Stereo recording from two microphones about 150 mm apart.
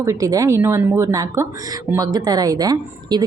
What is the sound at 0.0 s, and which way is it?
A woman's voice, 20° right (ahead or behind).